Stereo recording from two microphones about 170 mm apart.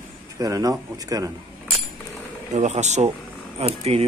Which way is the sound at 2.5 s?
45° right (ahead or behind).